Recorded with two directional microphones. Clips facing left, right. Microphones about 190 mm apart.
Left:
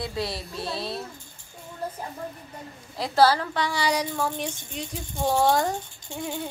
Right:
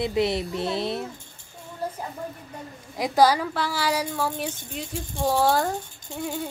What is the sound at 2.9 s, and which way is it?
Speech, 15° right (ahead or behind).